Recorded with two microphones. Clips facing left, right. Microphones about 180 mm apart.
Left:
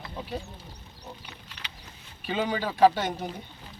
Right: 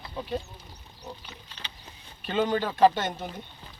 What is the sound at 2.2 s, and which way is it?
Speech, 5° left (ahead or behind).